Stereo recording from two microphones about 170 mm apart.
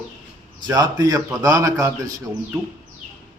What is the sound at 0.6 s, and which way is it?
A man's voice, 20° right (ahead or behind).